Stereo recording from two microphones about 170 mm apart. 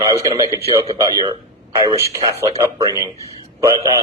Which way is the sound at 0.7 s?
20° right (ahead or behind).